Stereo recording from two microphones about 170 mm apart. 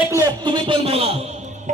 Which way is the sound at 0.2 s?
30° right (ahead or behind).